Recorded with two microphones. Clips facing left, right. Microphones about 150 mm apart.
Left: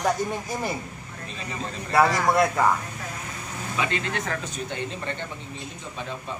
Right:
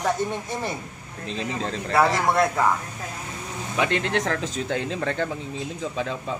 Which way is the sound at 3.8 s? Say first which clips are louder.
Right 5 dB; 65° right (ahead or behind).